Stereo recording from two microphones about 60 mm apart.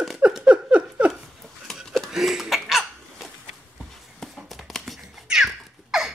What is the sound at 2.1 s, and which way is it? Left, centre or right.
Hiccup, centre.